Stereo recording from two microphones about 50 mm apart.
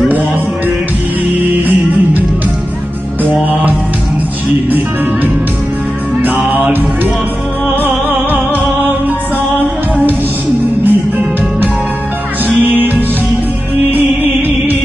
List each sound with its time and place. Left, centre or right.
6.2 s music: right
10.6 s music: right
12.6 s music: right
13.9 s music: right